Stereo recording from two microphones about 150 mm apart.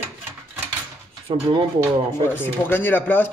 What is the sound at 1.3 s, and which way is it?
Speech, 30° right (ahead or behind).